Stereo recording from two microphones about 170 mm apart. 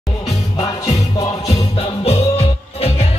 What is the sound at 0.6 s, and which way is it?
Music, 20° left (ahead or behind).